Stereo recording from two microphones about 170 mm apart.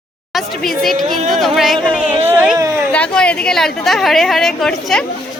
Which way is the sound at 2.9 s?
5° left (ahead or behind).